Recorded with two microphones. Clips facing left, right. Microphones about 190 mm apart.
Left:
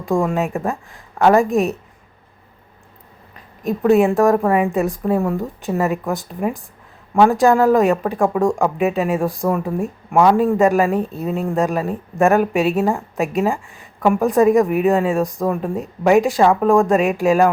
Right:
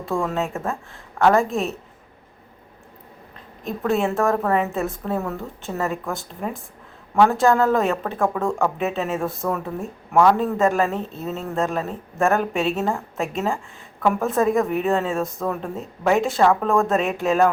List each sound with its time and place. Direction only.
0.1 s speech: 15° left (ahead or behind)
3.8 s speech: 15° left (ahead or behind)